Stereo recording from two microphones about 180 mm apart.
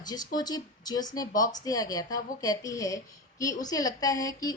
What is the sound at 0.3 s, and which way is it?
Speech, 20° left (ahead or behind).